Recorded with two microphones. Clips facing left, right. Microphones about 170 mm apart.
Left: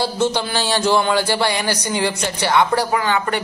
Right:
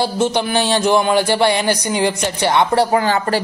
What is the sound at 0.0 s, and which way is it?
A man's voice, 20° right (ahead or behind).